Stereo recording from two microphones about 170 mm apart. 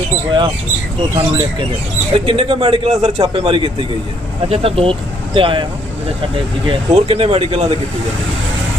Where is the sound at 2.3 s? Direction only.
35° right (ahead or behind).